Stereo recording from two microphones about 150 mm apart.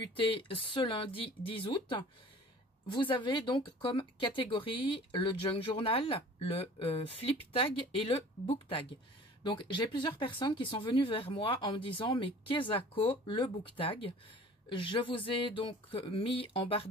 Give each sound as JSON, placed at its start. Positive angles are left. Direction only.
{"t": 0.1, "sound": "speech", "side_deg": 35}